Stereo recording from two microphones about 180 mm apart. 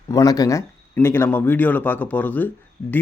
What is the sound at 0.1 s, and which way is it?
A man's voice, 20° left (ahead or behind).